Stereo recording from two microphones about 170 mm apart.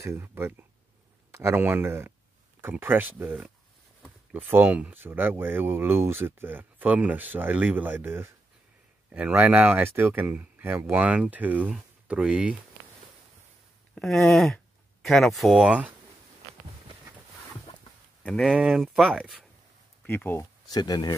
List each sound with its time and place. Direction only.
0.0 s speech: 15° right (ahead or behind)
13.9 s speech: 5° left (ahead or behind)
18.2 s speech: 5° left (ahead or behind)
20.1 s speech: 10° left (ahead or behind)